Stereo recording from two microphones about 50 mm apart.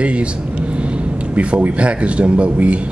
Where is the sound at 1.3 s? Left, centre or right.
Right.